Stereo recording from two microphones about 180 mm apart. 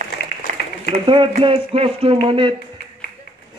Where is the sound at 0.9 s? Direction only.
30° right (ahead or behind).